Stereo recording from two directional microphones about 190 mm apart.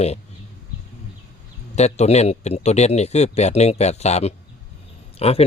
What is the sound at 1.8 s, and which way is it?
Speech, 35° left (ahead or behind).